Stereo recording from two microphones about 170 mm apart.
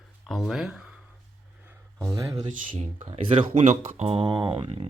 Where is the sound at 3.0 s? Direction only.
30° right (ahead or behind).